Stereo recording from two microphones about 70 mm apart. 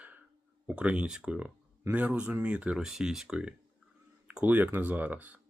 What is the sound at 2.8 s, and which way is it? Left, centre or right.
Speech, centre.